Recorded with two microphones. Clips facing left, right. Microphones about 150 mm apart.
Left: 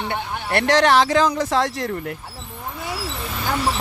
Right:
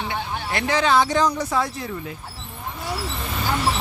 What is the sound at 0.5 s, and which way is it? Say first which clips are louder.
Speech: left 4 dB; 80° left.